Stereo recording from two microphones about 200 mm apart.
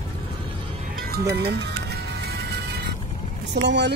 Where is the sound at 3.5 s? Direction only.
60° right (ahead or behind).